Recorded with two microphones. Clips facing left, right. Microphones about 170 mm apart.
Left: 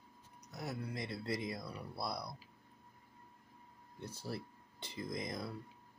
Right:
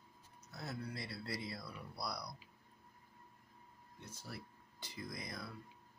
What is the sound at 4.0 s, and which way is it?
Speech, 30° left (ahead or behind).